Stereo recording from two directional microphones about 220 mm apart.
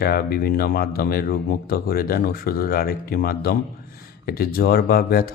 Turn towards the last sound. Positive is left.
turn(degrees=40)  # may be behind; listen again after turning